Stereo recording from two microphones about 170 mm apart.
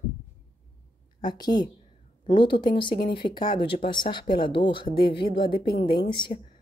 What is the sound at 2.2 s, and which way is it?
Speech, 30° left (ahead or behind).